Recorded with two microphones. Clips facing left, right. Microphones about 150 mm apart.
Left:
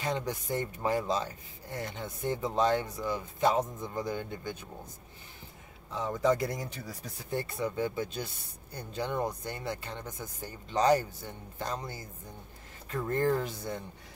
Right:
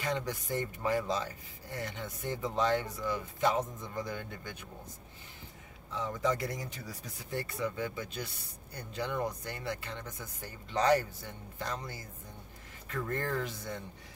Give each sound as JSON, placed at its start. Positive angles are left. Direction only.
{"t": 0.0, "sound": "speech", "side_deg": 25}
{"t": 5.9, "sound": "speech", "side_deg": 35}
{"t": 11.5, "sound": "speech", "side_deg": 25}